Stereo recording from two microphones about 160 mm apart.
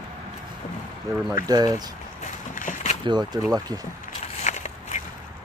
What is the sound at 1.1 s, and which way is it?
Speech, 20° right (ahead or behind).